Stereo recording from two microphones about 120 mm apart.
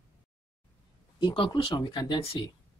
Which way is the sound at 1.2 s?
40° left (ahead or behind).